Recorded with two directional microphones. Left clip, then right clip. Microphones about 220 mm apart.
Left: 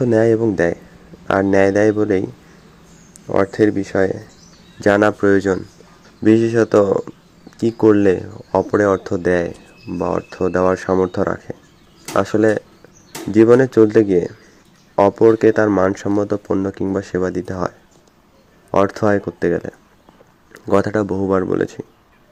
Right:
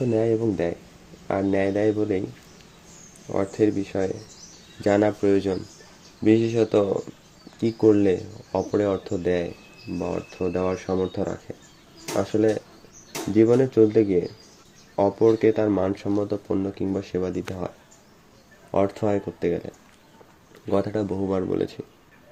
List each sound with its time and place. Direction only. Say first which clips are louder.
0.0 s speech: left 8 dB; 15° left (ahead or behind)
3.2 s speech: left 7 dB; 15° left (ahead or behind)
6.2 s speech: left 6 dB; 15° left (ahead or behind)
12.3 s speech: left 4 dB; 15° left (ahead or behind)
15.6 s speech: left 8 dB; 5° left (ahead or behind)
16.1 s speech: left 7 dB; 20° left (ahead or behind)
18.7 s speech: left 7 dB; 15° left (ahead or behind)
20.9 s speech: left 8 dB; 20° left (ahead or behind)